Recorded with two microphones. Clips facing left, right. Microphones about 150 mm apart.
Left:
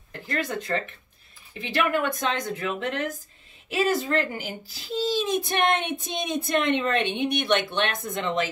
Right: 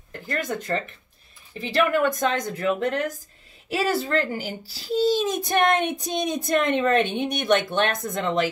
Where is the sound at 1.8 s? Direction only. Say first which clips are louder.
Right 4 dB; 45° right (ahead or behind).